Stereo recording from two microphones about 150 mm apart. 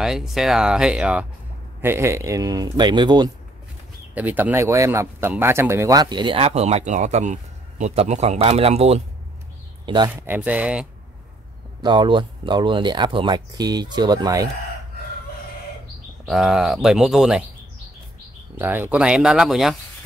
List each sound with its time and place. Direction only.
0.0 s a man's voice: 5° right (ahead or behind); by 3.3 s 30° right (ahead or behind)
4.1 s speech: 10° right (ahead or behind); by 9.0 s 40° right (ahead or behind)
9.8 s a man's voice: 30° right (ahead or behind)
10.2 s speech: 10° right (ahead or behind)
11.8 s speech: 30° right (ahead or behind)
16.3 s speech: 5° right (ahead or behind)
18.6 s speech: 15° right (ahead or behind)